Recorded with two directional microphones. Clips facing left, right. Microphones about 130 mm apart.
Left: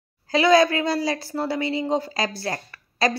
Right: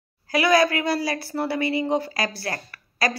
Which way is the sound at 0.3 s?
20° left (ahead or behind).